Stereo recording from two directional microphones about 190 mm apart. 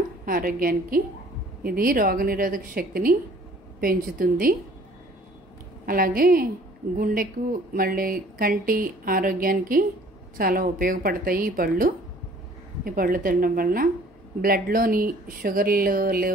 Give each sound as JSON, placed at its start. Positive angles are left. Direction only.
{"t": 0.2, "sound": "speech", "side_deg": -50}
{"t": 5.9, "sound": "speech", "side_deg": -50}
{"t": 7.7, "sound": "speech", "side_deg": -50}